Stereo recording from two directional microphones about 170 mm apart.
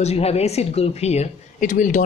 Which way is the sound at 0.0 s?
35° left (ahead or behind).